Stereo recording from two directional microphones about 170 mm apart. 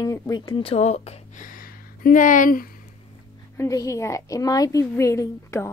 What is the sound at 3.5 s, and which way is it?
A woman's voice, 15° left (ahead or behind).